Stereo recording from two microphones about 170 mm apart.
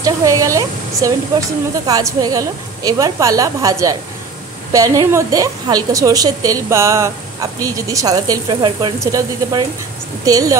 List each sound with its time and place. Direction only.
0.0 s a woman's voice: 20° right (ahead or behind)